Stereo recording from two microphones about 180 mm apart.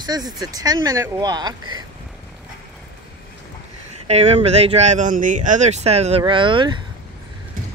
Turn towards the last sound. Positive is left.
turn(degrees=-25)  # may be behind; listen again after turning